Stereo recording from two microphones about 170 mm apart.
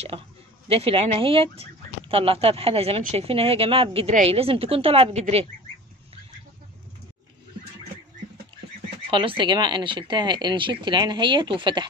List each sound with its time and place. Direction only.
0.7 s speech: 35° right (ahead or behind)
9.1 s speech: 30° right (ahead or behind)